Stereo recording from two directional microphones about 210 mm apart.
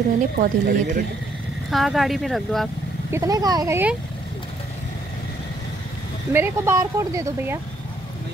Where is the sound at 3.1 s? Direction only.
15° right (ahead or behind).